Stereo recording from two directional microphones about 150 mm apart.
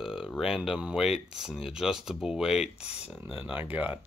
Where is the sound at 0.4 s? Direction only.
5° right (ahead or behind).